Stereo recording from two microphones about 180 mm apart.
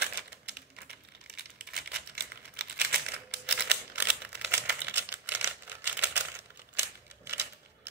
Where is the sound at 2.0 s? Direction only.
65° right (ahead or behind).